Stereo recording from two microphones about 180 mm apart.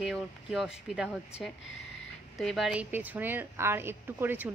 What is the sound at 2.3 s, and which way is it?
A woman's voice, centre (ahead or behind).